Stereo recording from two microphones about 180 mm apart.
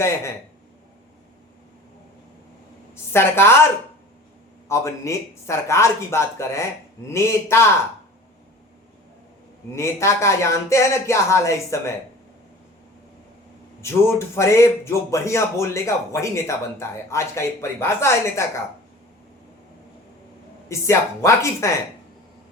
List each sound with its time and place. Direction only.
2.9 s a woman's voice: 15° left (ahead or behind)
4.7 s speech: 15° left (ahead or behind)
9.7 s speech: 15° left (ahead or behind)
13.8 s speech: 15° left (ahead or behind)
20.7 s speech: 15° left (ahead or behind)